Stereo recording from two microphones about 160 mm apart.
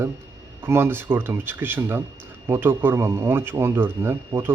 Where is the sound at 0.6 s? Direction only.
15° right (ahead or behind).